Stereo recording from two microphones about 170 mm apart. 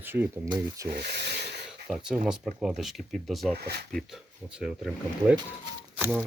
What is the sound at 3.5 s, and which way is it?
Speech, 70° right (ahead or behind).